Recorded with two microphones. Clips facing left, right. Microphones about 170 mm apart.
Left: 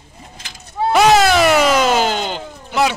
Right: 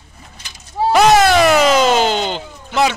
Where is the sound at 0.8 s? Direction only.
5° left (ahead or behind).